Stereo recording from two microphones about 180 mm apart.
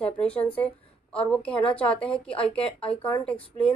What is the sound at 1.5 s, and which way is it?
Speech, 30° left (ahead or behind).